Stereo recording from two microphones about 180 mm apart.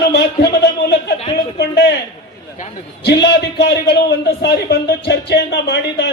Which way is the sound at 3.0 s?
75° left (ahead or behind).